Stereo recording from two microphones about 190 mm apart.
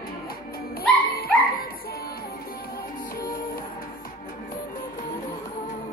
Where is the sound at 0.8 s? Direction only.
50° left (ahead or behind).